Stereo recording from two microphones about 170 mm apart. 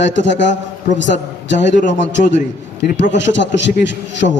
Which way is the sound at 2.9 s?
90° left.